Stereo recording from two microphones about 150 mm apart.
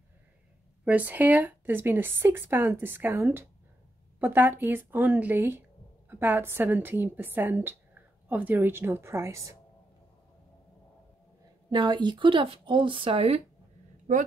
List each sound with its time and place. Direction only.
0.8 s a woman's voice: 10° right (ahead or behind)
11.7 s speech: 30° right (ahead or behind)